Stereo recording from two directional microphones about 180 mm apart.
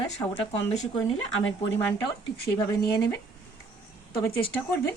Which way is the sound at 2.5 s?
20° left (ahead or behind).